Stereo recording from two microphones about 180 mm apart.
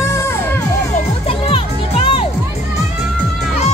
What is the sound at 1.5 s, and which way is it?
Music, 30° left (ahead or behind).